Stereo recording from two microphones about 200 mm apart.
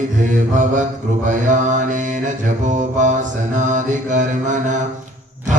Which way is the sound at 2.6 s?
40° right (ahead or behind).